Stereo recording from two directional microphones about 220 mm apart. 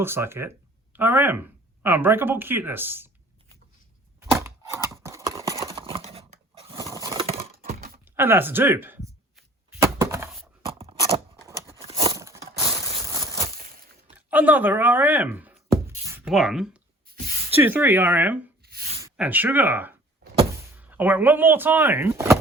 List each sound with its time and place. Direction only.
0.0 s speech: 10° right (ahead or behind)
4.4 s a sound: 10° right (ahead or behind)
5.1 s clip-clop: 15° right (ahead or behind)
5.6 s a sound: 25° right (ahead or behind)
6.9 s a sound: 15° right (ahead or behind)
7.6 s typing: 40° right (ahead or behind)
8.0 s speech: 10° right (ahead or behind)
9.8 s thunk: 10° right (ahead or behind)
10.7 s a sound: 25° right (ahead or behind)
14.2 s music: 5° right (ahead or behind)
17.5 s speech: 10° right (ahead or behind)
18.6 s sneeze: 45° right (ahead or behind)
19.1 s speech: 5° right (ahead or behind)